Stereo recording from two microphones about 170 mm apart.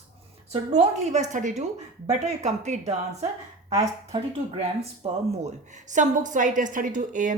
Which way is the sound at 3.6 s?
20° right (ahead or behind).